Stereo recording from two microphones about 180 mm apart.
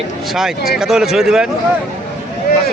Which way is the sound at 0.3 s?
Centre (ahead or behind).